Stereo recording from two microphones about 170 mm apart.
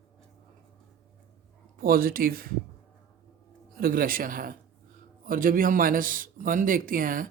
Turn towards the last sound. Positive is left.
turn(degrees=-55)  # may be behind; listen again after turning